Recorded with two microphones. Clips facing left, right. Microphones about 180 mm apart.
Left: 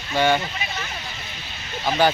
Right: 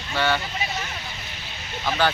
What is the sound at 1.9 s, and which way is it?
Speech, 15° left (ahead or behind).